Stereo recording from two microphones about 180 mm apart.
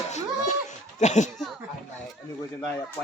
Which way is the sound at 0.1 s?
40° left (ahead or behind).